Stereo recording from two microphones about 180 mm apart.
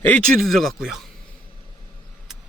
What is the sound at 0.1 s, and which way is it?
Speech, centre (ahead or behind).